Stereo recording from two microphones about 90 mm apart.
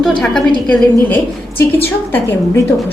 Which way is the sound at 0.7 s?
20° left (ahead or behind).